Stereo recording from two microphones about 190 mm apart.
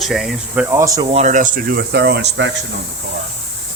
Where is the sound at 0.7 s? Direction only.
15° right (ahead or behind).